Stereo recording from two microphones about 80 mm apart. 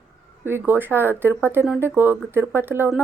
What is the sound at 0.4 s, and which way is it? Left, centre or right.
Speech, right.